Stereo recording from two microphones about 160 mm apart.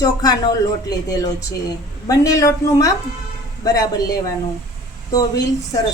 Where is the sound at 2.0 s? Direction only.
20° left (ahead or behind).